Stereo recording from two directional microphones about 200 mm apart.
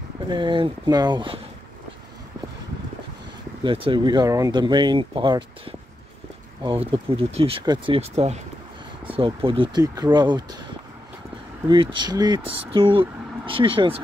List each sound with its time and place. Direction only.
0.3 s speech: 25° right (ahead or behind)
3.6 s speech: 25° right (ahead or behind)
11.7 s speech: 25° right (ahead or behind)